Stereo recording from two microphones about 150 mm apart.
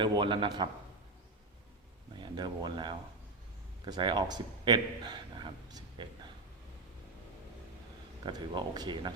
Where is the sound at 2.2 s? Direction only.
30° right (ahead or behind).